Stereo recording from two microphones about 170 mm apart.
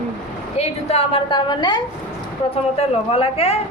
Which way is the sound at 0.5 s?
40° left (ahead or behind).